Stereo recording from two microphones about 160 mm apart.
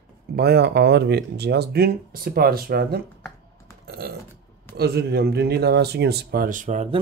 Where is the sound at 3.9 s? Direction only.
80° right.